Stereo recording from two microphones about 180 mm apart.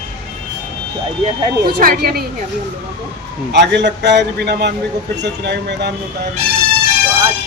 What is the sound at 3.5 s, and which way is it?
A man's voice, 75° right (ahead or behind).